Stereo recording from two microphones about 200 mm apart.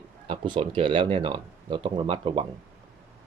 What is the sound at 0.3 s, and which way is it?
Speech, 25° right (ahead or behind).